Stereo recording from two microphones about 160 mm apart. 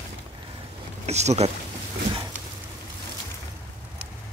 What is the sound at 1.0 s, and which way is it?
Speech, 45° right (ahead or behind).